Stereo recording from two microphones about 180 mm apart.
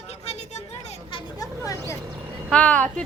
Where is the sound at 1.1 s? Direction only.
20° left (ahead or behind).